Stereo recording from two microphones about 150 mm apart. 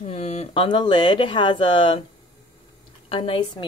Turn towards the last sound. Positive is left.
turn(degrees=35)  # may be behind; listen again after turning